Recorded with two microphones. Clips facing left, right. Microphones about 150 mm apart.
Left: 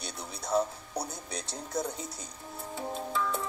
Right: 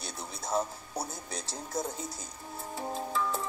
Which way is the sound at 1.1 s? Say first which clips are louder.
Left 1 dB; centre (ahead or behind).